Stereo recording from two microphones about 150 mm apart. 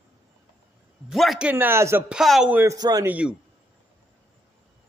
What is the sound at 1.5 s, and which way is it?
Speech, 15° right (ahead or behind).